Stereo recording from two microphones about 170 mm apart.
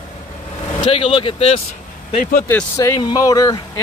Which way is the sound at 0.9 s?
30° left (ahead or behind).